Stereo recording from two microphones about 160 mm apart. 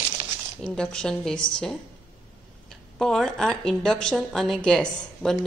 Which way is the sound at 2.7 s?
Centre (ahead or behind).